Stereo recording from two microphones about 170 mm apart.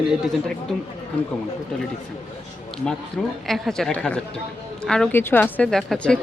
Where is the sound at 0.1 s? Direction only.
Centre (ahead or behind).